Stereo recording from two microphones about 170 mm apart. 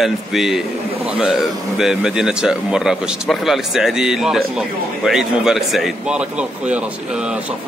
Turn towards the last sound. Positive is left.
turn(degrees=-5)  # may be behind; listen again after turning